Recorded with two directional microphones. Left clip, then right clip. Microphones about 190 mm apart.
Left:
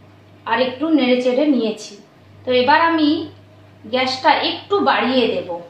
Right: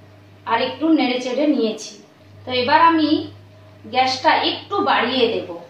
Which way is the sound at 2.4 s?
50° left (ahead or behind).